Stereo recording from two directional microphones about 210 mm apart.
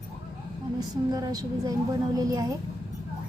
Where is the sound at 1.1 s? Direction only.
15° right (ahead or behind).